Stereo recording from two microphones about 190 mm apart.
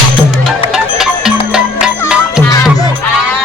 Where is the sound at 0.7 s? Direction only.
5° right (ahead or behind).